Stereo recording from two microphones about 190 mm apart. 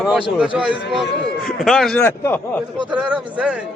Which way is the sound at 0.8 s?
65° left (ahead or behind).